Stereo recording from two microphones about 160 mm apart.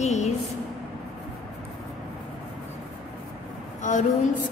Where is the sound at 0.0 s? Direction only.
45° left (ahead or behind).